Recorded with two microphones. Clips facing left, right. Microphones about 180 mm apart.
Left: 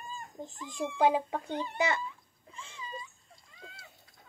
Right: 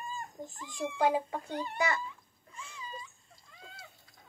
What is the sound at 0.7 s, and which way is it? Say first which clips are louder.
A child's voice: left 2 dB; 20° left (ahead or behind).